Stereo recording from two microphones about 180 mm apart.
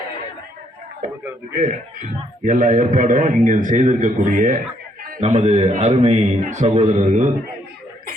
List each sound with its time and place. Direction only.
1.5 s a man's voice: 45° right (ahead or behind)
5.2 s a man's voice: 40° right (ahead or behind)